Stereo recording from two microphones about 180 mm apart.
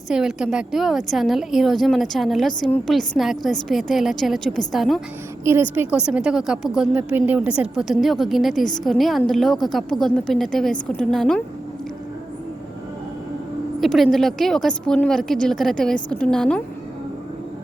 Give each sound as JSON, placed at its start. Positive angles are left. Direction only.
{"t": 0.1, "sound": "a woman's voice", "side_deg": -5}
{"t": 5.5, "sound": "a woman's voice", "side_deg": -10}
{"t": 13.8, "sound": "a woman's voice", "side_deg": 0}